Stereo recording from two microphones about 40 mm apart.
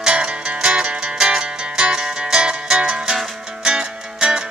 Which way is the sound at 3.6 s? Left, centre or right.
Centre.